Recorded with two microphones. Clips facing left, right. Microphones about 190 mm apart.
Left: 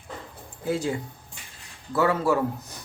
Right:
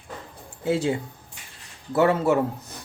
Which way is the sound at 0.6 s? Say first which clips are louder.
Right 3 dB; 25° right (ahead or behind).